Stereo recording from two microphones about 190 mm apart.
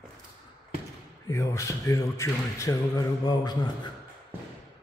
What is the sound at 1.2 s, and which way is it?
A man's voice, 15° left (ahead or behind).